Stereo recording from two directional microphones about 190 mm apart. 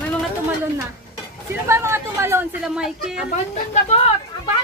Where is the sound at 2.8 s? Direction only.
Centre (ahead or behind).